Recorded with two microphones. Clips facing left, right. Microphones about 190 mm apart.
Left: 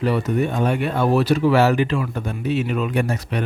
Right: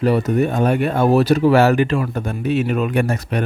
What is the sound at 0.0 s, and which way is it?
Speech, 40° right (ahead or behind).